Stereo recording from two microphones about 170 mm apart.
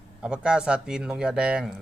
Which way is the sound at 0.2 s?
5° right (ahead or behind).